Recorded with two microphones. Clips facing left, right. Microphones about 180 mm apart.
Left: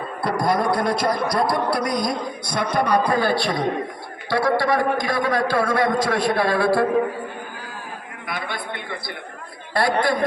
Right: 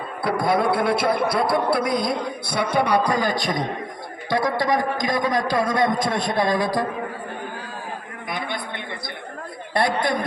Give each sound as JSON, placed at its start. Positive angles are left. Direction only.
{"t": 0.2, "sound": "a man's voice", "side_deg": 0}
{"t": 8.3, "sound": "a sound", "side_deg": -20}
{"t": 9.7, "sound": "speech", "side_deg": -20}